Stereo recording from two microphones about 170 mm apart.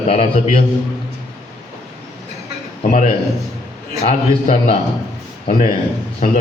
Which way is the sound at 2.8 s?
45° left (ahead or behind).